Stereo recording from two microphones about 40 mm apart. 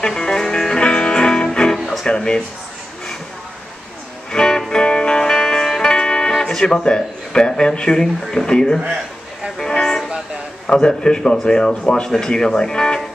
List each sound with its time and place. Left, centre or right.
0.0 s music: centre
2.0 s speech: left
4.3 s music: centre
6.8 s speech: left
9.6 s music: centre
10.7 s speech: centre